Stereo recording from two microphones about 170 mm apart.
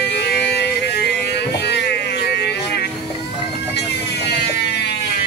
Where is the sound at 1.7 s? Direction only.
75° left (ahead or behind).